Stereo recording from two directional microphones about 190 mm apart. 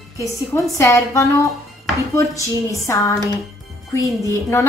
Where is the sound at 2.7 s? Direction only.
15° left (ahead or behind).